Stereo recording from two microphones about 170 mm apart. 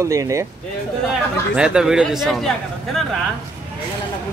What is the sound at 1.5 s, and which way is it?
Speech, 5° right (ahead or behind).